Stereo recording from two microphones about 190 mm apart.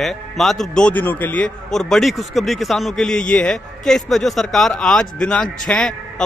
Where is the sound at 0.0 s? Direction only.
Centre (ahead or behind).